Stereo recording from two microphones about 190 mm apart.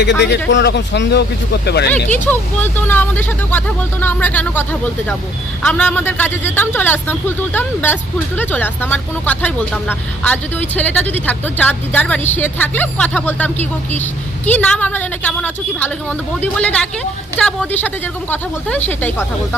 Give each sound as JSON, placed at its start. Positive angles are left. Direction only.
{"t": 0.2, "sound": "speech", "side_deg": 65}
{"t": 1.9, "sound": "speech", "side_deg": 10}